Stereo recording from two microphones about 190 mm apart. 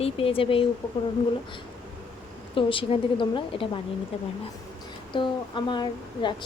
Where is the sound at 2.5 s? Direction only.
25° left (ahead or behind).